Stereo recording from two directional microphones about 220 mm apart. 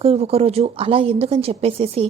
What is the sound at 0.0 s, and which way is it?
Speech, 25° right (ahead or behind).